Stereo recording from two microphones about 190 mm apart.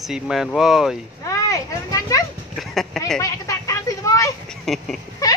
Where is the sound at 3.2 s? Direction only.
15° left (ahead or behind).